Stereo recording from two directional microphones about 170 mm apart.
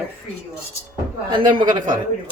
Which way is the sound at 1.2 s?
25° right (ahead or behind).